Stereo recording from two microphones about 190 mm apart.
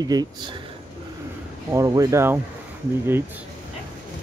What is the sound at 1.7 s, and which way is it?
Speech, 15° right (ahead or behind).